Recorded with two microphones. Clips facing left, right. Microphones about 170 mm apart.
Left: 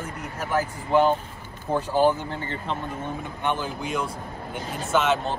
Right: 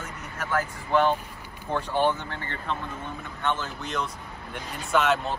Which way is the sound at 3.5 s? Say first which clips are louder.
Left 2 dB; 15° left (ahead or behind).